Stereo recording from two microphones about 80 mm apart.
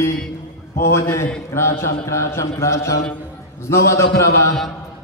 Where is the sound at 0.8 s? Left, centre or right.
Left.